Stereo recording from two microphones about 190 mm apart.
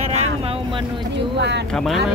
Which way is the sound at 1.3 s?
65° right (ahead or behind).